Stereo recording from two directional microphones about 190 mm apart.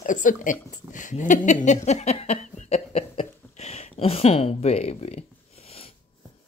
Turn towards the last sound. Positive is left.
turn(degrees=30)  # may be behind; listen again after turning